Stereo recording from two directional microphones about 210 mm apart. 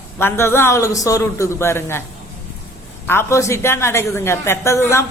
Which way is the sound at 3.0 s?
10° left (ahead or behind).